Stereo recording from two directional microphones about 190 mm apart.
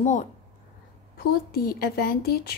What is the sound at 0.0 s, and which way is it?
Speech, 40° left (ahead or behind).